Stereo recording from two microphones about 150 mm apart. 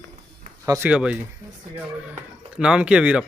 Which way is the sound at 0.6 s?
20° right (ahead or behind).